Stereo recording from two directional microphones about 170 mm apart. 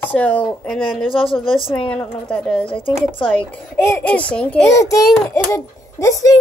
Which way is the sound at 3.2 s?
30° left (ahead or behind).